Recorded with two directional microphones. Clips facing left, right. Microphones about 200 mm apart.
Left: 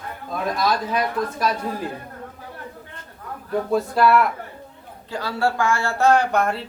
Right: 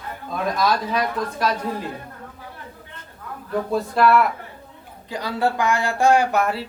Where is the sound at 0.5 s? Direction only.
Centre (ahead or behind).